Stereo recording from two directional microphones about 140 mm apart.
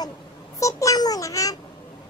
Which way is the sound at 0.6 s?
20° left (ahead or behind).